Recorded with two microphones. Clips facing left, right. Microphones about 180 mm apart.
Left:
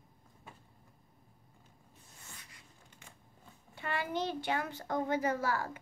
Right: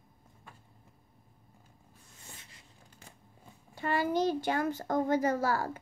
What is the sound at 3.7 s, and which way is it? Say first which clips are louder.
A child's voice: right 6 dB; 40° right (ahead or behind).